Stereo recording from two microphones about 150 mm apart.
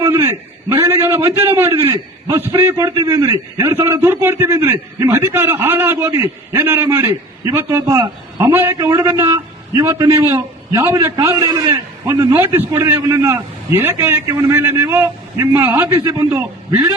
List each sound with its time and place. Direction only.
0.0 s a man's voice: 15° right (ahead or behind)